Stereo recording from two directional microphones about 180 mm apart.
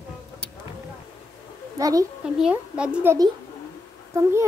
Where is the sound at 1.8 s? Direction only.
20° right (ahead or behind).